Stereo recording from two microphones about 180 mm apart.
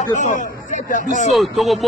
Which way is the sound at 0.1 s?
40° left (ahead or behind).